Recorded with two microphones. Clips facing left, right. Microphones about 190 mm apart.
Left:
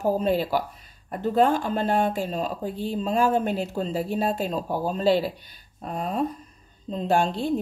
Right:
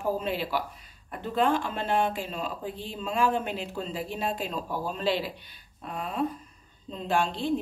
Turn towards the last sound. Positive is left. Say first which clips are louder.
# left 5 dB
turn(degrees=40)  # may be behind; listen again after turning